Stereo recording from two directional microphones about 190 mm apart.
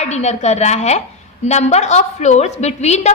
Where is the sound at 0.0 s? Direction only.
35° left (ahead or behind).